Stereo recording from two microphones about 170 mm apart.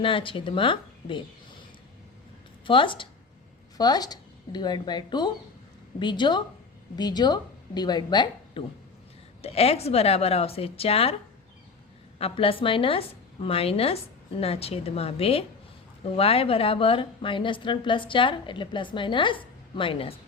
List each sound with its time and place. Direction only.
0.0 s a woman's voice: 30° left (ahead or behind)
2.6 s a woman's voice: 30° left (ahead or behind)
9.4 s a woman's voice: 35° left (ahead or behind)
12.2 s a woman's voice: 30° left (ahead or behind)